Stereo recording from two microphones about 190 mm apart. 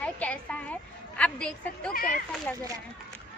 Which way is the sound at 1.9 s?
50° left (ahead or behind).